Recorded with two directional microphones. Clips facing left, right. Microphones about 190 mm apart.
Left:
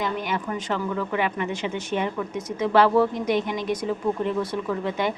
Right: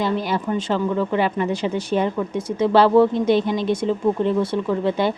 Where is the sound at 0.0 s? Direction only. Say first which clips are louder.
Right 5 dB; 35° right (ahead or behind).